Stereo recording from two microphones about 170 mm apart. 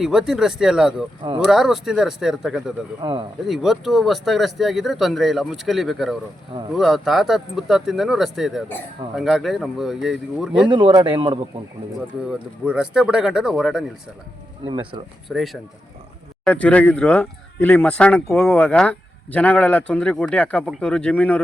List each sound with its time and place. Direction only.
0.0 s speech: 5° right (ahead or behind)
3.0 s speech: 30° right (ahead or behind)
3.4 s speech: centre (ahead or behind)
10.7 s speech: 25° right (ahead or behind)
12.3 s speech: 5° right (ahead or behind)
14.7 s speech: 25° right (ahead or behind)
15.3 s speech: 5° left (ahead or behind)